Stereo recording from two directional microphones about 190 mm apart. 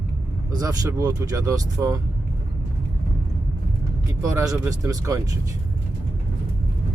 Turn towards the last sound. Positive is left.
turn(degrees=-20)  # may be behind; listen again after turning